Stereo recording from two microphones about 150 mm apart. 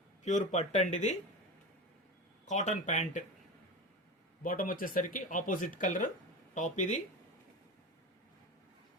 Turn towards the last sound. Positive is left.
turn(degrees=55)  # may be behind; listen again after turning